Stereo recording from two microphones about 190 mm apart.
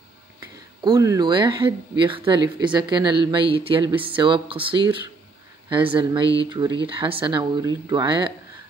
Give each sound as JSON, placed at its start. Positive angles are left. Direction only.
{"t": 0.8, "sound": "speech", "side_deg": -20}